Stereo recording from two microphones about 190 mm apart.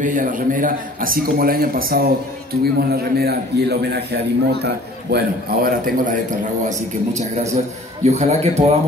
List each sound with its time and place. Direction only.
0.0 s a man's voice: 45° right (ahead or behind)
7.2 s a man's voice: 35° right (ahead or behind)